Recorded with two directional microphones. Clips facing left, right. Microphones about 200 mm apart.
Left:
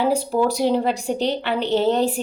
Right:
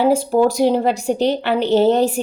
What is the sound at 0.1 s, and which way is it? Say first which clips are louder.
A woman's voice: right 5 dB; 45° right (ahead or behind).